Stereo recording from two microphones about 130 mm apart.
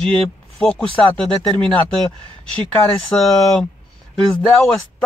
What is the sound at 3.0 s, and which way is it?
Speech, 5° left (ahead or behind).